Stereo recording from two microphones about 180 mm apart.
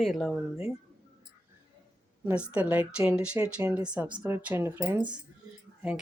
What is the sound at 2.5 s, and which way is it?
Speech, 10° right (ahead or behind).